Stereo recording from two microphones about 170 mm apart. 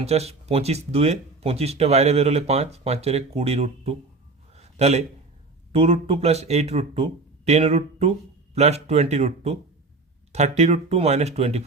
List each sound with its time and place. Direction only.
0.0 s speech: 40° right (ahead or behind)
4.5 s a sound: 40° right (ahead or behind)
5.7 s speech: 35° right (ahead or behind)